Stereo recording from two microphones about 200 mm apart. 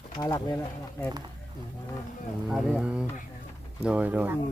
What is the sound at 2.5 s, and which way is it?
Speech, centre (ahead or behind).